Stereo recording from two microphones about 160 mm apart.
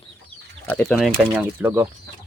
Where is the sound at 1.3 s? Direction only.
15° right (ahead or behind).